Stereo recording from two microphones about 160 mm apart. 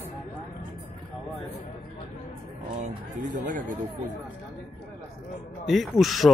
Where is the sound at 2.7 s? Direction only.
50° right (ahead or behind).